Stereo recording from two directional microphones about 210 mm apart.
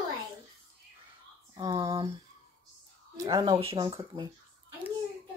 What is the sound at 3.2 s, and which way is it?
Speech, 20° right (ahead or behind).